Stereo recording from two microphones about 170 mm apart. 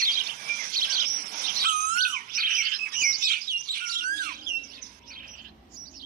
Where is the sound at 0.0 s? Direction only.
55° right (ahead or behind).